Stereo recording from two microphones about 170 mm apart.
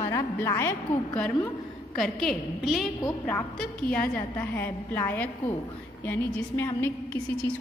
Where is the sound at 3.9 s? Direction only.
10° left (ahead or behind).